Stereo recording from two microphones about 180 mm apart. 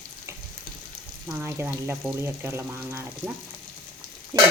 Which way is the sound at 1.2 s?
15° right (ahead or behind).